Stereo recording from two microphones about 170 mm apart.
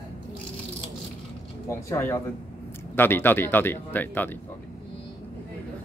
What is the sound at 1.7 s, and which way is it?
Speech, 15° left (ahead or behind).